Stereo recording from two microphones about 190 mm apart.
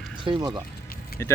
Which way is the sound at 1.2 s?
15° left (ahead or behind).